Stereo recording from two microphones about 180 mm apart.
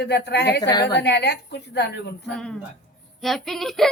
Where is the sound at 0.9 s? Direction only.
70° left (ahead or behind).